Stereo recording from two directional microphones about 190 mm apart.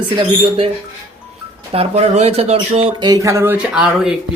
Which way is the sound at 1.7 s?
30° right (ahead or behind).